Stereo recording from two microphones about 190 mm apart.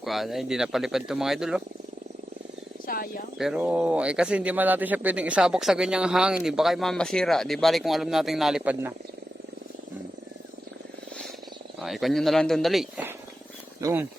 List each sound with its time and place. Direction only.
0.0 s speech: centre (ahead or behind)
2.8 s speech: 50° left (ahead or behind)
3.3 s speech: 5° right (ahead or behind)
11.8 s speech: centre (ahead or behind)
13.8 s speech: 10° right (ahead or behind)